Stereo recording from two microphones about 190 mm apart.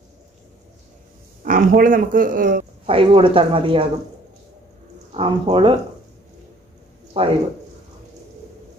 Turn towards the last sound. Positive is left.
turn(degrees=-30)  # may be behind; listen again after turning